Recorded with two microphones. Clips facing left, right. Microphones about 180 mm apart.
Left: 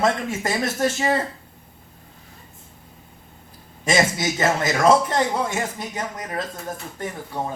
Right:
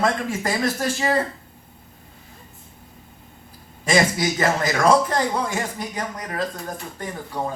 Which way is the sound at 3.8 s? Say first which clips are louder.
Right 1 dB; 25° left (ahead or behind).